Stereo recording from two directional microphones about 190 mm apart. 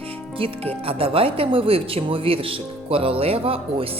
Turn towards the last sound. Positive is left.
turn(degrees=-30)  # may be behind; listen again after turning